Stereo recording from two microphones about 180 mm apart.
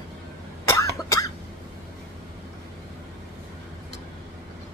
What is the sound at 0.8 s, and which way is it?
Cough, 20° left (ahead or behind).